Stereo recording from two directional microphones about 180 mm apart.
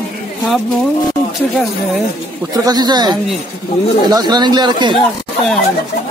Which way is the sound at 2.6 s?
20° right (ahead or behind).